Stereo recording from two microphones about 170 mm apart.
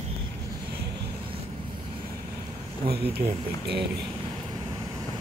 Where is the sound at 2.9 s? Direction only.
70° right (ahead or behind).